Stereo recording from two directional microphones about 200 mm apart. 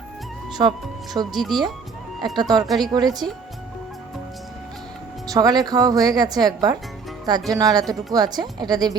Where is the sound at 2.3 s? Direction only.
20° right (ahead or behind).